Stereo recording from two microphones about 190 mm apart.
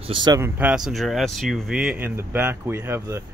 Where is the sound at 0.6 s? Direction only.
5° right (ahead or behind).